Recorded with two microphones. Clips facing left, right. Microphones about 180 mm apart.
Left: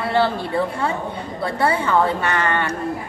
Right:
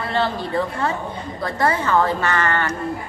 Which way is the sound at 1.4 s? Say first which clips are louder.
Left 1 dB; 10° left (ahead or behind).